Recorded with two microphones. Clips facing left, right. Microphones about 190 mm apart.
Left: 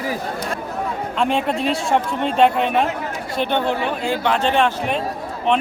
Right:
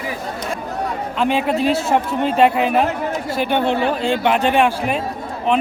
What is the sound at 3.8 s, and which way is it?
Speech, 30° right (ahead or behind).